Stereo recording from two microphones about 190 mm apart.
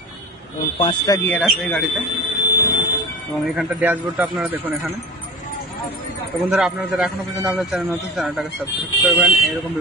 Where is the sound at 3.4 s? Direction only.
5° right (ahead or behind).